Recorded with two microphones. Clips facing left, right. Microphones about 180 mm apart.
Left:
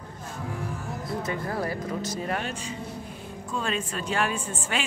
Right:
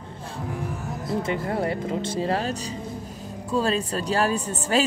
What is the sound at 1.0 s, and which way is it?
A woman's voice, 25° right (ahead or behind).